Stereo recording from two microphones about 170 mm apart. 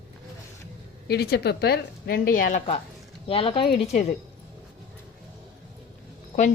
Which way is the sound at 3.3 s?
30° left (ahead or behind).